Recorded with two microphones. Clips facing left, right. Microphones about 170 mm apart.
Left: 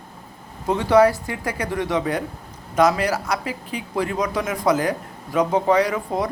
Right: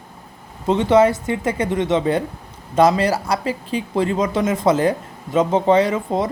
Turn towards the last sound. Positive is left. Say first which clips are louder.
# right 3 dB
turn(degrees=-25)  # may be behind; listen again after turning